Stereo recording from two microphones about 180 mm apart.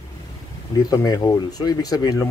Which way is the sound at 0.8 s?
20° left (ahead or behind).